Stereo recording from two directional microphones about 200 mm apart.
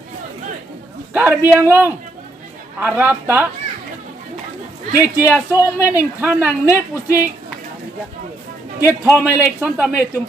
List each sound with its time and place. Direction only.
1.1 s a woman's voice: 10° right (ahead or behind)
5.0 s a woman's voice: 5° right (ahead or behind)
5.5 s speech: 15° left (ahead or behind)
5.9 s a woman's voice: 10° right (ahead or behind)
8.8 s a woman's voice: 10° right (ahead or behind)